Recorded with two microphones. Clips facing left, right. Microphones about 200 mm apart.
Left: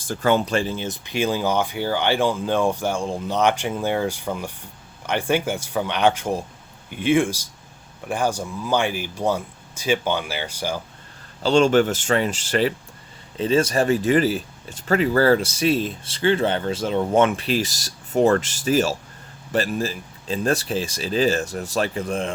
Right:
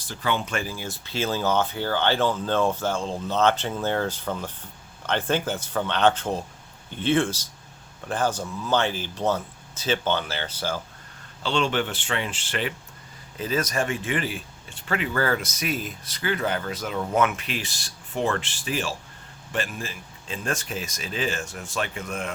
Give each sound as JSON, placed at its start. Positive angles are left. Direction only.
{"t": 0.0, "sound": "speech", "side_deg": 50}
{"t": 11.4, "sound": "speech", "side_deg": 40}
{"t": 13.3, "sound": "speech", "side_deg": 30}